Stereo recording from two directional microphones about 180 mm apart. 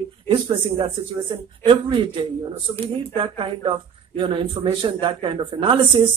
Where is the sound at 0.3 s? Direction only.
30° right (ahead or behind).